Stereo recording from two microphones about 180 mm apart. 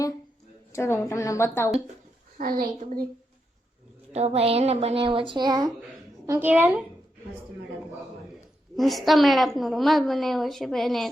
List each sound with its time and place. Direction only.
0.7 s a woman's voice: 15° left (ahead or behind)
2.4 s a child's voice: 50° right (ahead or behind)
4.1 s a woman's voice: 35° right (ahead or behind); by 6.8 s 10° right (ahead or behind)
8.7 s a woman's voice: centre (ahead or behind)